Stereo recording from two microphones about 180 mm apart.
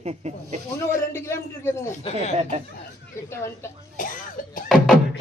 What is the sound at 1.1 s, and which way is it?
Speech, 15° left (ahead or behind).